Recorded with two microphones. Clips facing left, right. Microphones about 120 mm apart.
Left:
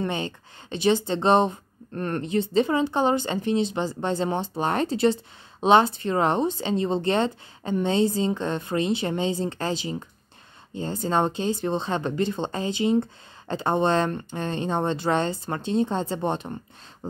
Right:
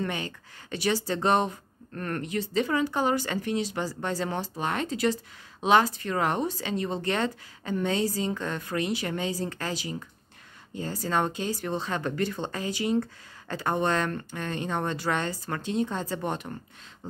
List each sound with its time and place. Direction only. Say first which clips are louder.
0.0 s a woman's voice: left 4 dB; 25° left (ahead or behind)